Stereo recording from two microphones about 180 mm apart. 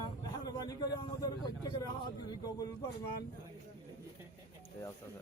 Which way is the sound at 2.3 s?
20° left (ahead or behind).